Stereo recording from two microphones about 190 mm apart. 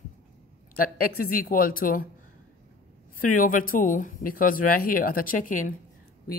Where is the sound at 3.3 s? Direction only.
45° left (ahead or behind).